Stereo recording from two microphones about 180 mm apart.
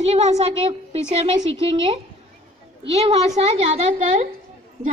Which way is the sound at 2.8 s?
35° right (ahead or behind).